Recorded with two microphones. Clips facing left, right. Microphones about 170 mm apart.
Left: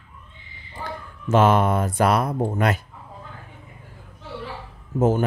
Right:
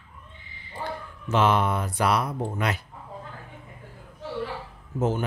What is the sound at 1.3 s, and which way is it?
Speech, 50° left (ahead or behind).